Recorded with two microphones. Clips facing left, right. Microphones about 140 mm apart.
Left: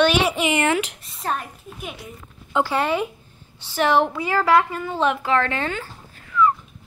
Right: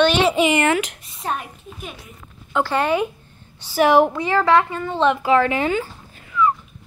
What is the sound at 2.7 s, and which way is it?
A woman's voice, centre (ahead or behind).